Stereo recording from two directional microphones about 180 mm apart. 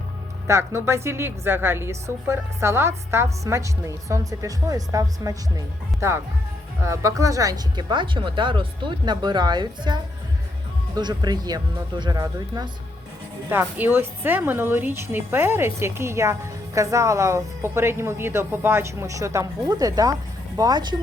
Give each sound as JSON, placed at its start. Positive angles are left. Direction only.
{"t": 0.4, "sound": "a woman's voice", "side_deg": -15}
{"t": 13.5, "sound": "a woman's voice", "side_deg": -10}